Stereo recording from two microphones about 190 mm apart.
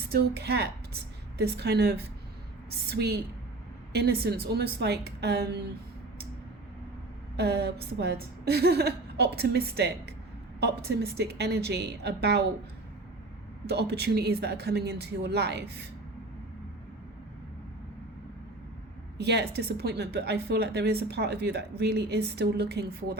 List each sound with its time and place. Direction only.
0.1 s a woman's voice: 60° right (ahead or behind)
7.3 s a woman's voice: 60° right (ahead or behind)
13.7 s a woman's voice: 60° right (ahead or behind)
19.1 s a woman's voice: 60° right (ahead or behind)